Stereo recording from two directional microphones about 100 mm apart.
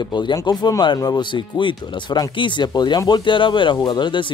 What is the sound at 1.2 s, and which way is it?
Speech, 55° left (ahead or behind).